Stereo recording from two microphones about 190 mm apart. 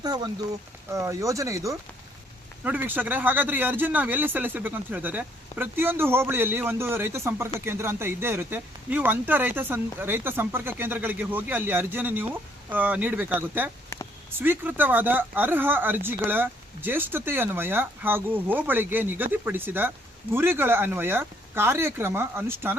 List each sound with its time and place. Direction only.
0.0 s speech: 20° right (ahead or behind)